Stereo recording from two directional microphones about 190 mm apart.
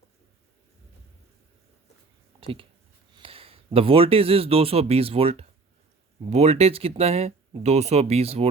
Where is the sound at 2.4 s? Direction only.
30° right (ahead or behind).